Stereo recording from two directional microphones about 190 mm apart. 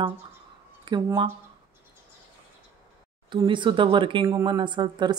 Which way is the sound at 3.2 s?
25° right (ahead or behind).